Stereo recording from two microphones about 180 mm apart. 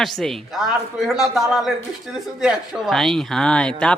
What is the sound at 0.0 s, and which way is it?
Speech, centre (ahead or behind).